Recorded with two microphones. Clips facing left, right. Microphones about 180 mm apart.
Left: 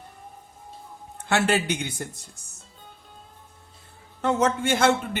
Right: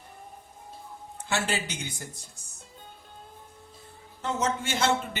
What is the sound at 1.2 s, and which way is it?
Speech, 60° left (ahead or behind).